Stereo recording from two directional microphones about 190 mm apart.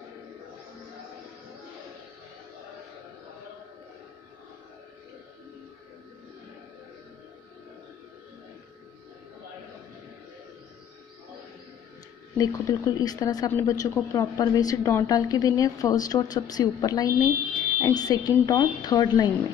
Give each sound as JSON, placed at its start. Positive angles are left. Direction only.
{"t": 12.4, "sound": "a woman's voice", "side_deg": 20}